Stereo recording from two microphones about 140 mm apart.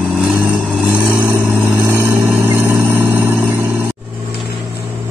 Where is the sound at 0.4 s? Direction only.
10° right (ahead or behind).